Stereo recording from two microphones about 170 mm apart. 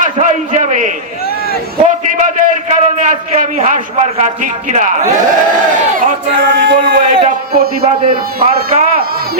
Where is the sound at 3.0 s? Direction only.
50° right (ahead or behind).